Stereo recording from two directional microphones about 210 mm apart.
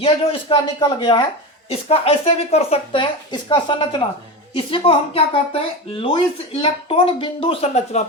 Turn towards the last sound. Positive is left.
turn(degrees=30)  # may be behind; listen again after turning